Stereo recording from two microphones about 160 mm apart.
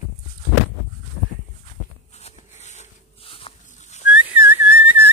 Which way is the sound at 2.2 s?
45° left (ahead or behind).